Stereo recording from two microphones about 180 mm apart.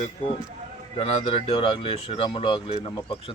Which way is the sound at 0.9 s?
35° left (ahead or behind).